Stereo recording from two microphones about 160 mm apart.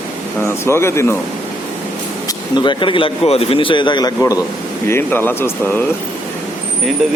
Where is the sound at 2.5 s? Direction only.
30° left (ahead or behind); by 5.8 s 10° left (ahead or behind).